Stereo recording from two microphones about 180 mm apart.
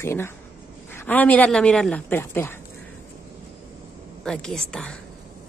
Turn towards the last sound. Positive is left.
turn(degrees=5)  # may be behind; listen again after turning